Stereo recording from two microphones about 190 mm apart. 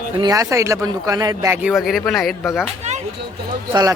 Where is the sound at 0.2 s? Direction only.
20° right (ahead or behind).